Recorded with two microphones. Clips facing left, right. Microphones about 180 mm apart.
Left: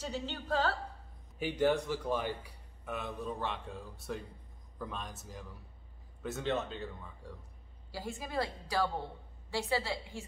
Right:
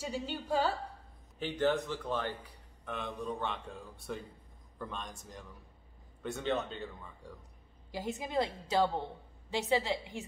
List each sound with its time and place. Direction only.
0.0 s a woman's voice: 10° right (ahead or behind)
1.4 s a man's voice: 10° left (ahead or behind)
7.9 s a woman's voice: 20° right (ahead or behind)